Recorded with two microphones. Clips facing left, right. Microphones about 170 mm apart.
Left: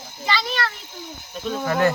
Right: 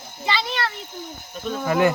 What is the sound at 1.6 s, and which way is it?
Speech, 10° right (ahead or behind).